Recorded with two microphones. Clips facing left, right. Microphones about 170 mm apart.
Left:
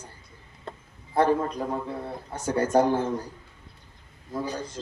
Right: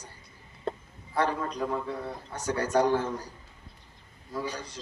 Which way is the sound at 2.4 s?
50° left (ahead or behind).